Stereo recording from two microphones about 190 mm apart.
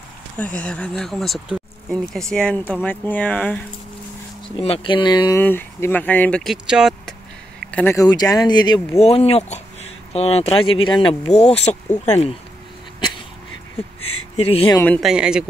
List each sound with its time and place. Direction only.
0.4 s speech: 5° left (ahead or behind)
4.6 s speech: 30° left (ahead or behind)
5.4 s speech: 10° left (ahead or behind)
7.7 s speech: 15° left (ahead or behind); by 11.8 s 35° left (ahead or behind)
13.8 s speech: 30° left (ahead or behind)
15.0 s speech: 5° right (ahead or behind)